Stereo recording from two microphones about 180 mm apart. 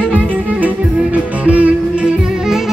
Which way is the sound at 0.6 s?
10° right (ahead or behind).